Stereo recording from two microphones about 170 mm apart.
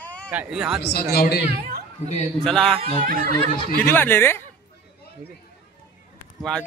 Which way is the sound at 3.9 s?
15° left (ahead or behind).